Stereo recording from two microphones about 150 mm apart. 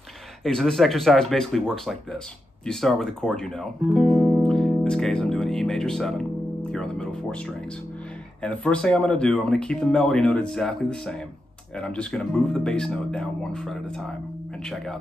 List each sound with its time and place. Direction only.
0.4 s speech: centre (ahead or behind)